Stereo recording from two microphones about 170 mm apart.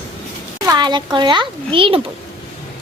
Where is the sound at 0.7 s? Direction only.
25° right (ahead or behind).